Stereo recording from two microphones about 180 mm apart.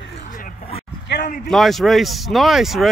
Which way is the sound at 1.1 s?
70° left (ahead or behind).